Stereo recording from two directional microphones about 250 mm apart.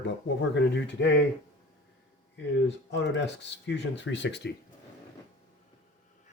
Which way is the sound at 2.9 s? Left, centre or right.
Left.